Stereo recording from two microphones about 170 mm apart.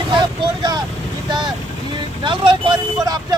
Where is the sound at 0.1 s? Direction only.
25° right (ahead or behind).